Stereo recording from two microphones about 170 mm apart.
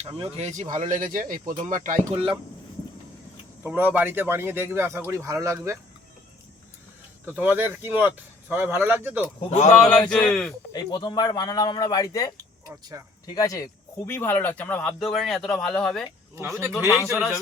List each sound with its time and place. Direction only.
0.1 s speech: 35° right (ahead or behind)
3.6 s speech: 10° right (ahead or behind)
7.3 s speech: 10° right (ahead or behind)
9.5 s speech: 45° left (ahead or behind)
9.7 s speech: 5° left (ahead or behind)
10.7 s speech: 25° left (ahead or behind); by 16.0 s 5° left (ahead or behind)
16.3 s speech: 15° right (ahead or behind)